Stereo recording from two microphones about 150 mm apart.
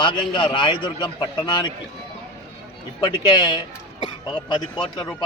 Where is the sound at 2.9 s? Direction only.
30° left (ahead or behind).